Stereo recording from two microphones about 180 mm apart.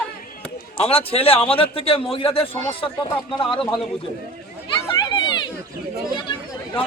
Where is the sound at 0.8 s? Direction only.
35° left (ahead or behind).